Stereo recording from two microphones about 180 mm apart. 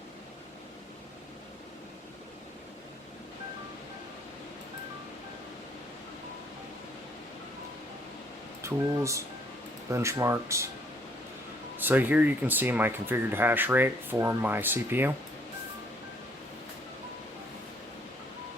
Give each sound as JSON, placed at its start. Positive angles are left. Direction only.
{"t": 8.6, "sound": "speech", "side_deg": -15}
{"t": 11.8, "sound": "speech", "side_deg": -10}